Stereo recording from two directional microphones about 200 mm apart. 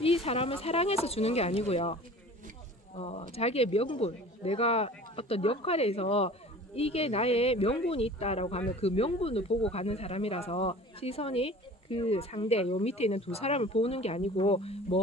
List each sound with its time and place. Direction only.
0.0 s speech: 30° left (ahead or behind)